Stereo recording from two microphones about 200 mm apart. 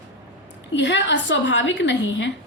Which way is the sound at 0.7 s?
65° left (ahead or behind).